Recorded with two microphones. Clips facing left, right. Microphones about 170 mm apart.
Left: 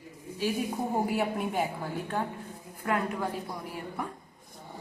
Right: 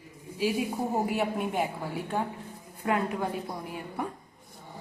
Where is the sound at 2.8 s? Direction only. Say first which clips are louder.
Right 2 dB; 20° right (ahead or behind).